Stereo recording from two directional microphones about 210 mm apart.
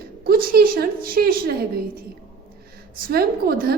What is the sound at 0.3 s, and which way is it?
A woman's voice, 45° right (ahead or behind).